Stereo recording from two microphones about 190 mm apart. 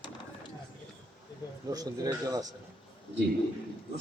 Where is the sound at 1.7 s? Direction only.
20° right (ahead or behind).